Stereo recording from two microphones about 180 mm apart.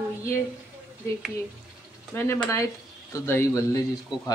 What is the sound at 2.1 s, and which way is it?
Speech, 15° left (ahead or behind).